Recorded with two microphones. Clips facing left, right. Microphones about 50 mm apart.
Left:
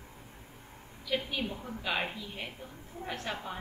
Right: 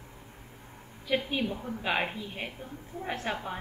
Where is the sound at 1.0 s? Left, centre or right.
Right.